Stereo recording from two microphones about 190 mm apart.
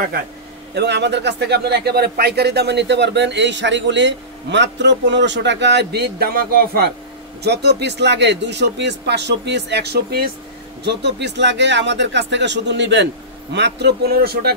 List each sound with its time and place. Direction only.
0.7 s speech: 65° right (ahead or behind)